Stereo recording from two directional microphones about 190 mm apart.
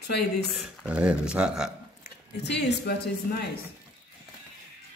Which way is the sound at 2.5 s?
60° left (ahead or behind).